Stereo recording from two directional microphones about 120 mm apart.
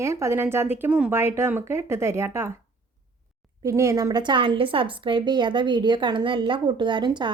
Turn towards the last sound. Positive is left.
turn(degrees=-40)  # may be behind; listen again after turning